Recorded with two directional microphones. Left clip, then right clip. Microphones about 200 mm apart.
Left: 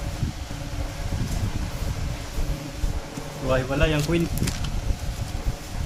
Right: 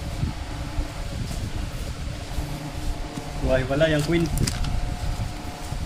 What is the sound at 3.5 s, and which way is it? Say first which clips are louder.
Speech: right 2 dB; 10° left (ahead or behind).